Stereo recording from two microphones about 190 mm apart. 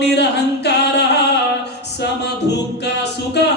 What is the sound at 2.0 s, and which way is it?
A capella, 60° left (ahead or behind).